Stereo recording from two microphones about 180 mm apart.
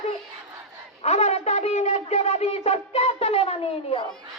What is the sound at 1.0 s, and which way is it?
Shofar, 35° left (ahead or behind).